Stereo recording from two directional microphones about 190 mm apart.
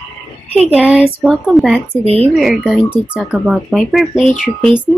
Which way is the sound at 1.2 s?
Centre (ahead or behind).